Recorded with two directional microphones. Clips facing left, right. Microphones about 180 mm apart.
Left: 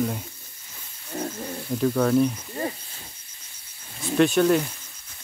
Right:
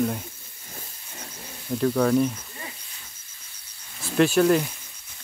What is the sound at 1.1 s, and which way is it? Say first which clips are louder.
Wild animals: left 14 dB; 45° left (ahead or behind).